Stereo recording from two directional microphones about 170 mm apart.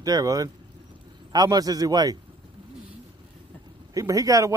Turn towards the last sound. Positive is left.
turn(degrees=-20)  # may be behind; listen again after turning